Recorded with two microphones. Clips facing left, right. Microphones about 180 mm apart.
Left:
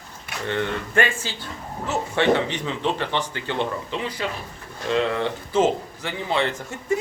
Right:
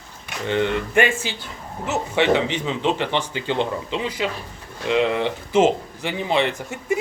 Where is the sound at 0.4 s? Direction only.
20° right (ahead or behind).